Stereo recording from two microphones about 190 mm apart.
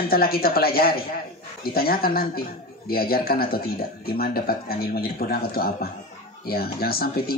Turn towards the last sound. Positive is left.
turn(degrees=50)  # may be behind; listen again after turning